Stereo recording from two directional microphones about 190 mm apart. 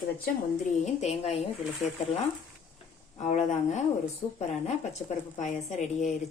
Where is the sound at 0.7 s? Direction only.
35° left (ahead or behind).